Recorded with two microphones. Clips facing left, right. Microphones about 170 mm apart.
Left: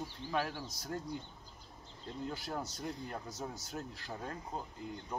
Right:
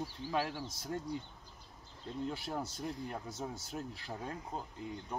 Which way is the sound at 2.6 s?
30° right (ahead or behind).